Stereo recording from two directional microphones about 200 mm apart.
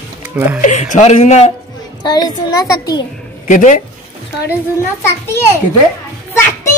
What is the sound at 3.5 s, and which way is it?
Speech, 40° left (ahead or behind).